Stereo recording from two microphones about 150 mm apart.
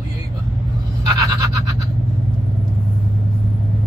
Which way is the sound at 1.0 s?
25° right (ahead or behind).